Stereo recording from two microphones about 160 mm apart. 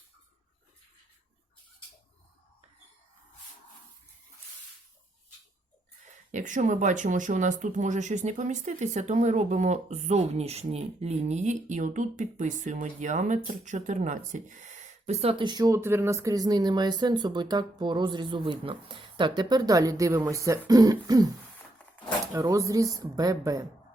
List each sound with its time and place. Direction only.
6.3 s speech: 50° right (ahead or behind); by 21.2 s 25° right (ahead or behind)
22.3 s speech: 15° right (ahead or behind)